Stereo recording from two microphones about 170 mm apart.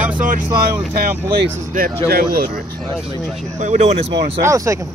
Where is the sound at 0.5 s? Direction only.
60° right (ahead or behind).